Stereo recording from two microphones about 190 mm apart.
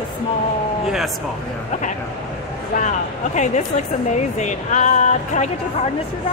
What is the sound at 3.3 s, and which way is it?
Speech, 40° left (ahead or behind).